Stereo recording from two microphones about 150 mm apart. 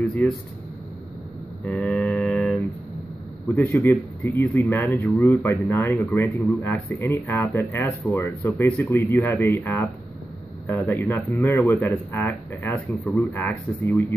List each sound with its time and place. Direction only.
0.0 s speech: 10° left (ahead or behind)
1.6 s mantra: 10° left (ahead or behind)
3.4 s speech: 15° left (ahead or behind)